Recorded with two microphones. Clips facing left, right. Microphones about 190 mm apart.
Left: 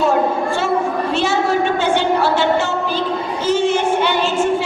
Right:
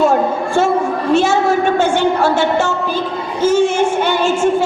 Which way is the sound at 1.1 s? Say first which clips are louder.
Right 6 dB; 45° right (ahead or behind).